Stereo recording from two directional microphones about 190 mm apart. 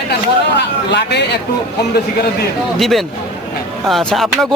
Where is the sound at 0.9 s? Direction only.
65° left (ahead or behind).